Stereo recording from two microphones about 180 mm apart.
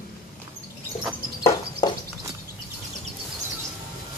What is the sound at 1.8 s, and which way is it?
Walk, 25° left (ahead or behind).